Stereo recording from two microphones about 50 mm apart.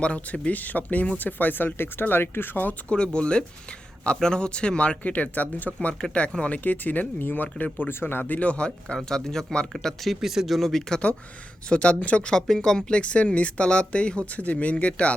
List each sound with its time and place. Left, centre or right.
0.0 s speech: left
0.4 s speech: left
2.9 s speech: centre; by 7.9 s left
7.9 s speech: left
8.2 s speech: left; by 10.2 s centre
10.2 s speech: centre
11.7 s speech: left
12.3 s speech: centre
13.0 s speech: left